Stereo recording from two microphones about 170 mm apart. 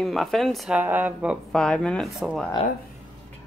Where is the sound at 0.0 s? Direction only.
Centre (ahead or behind).